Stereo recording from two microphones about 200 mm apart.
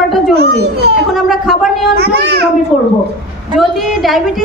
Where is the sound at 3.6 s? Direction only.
Centre (ahead or behind).